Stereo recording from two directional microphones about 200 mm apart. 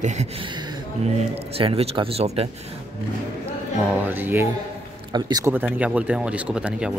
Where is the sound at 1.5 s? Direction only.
30° right (ahead or behind).